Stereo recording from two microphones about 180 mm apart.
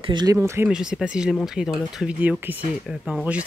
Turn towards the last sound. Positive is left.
turn(degrees=-5)  # may be behind; listen again after turning